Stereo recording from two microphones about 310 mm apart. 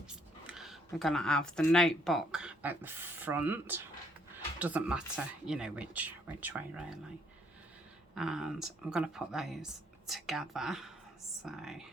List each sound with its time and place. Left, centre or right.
0.1 s speech: centre
8.1 s speech: centre